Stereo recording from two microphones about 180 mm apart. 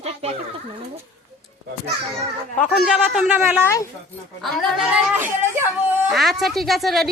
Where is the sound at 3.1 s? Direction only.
5° right (ahead or behind).